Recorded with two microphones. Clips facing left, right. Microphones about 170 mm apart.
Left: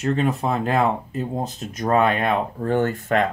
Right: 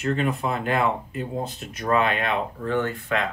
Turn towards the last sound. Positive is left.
turn(degrees=45)  # may be behind; listen again after turning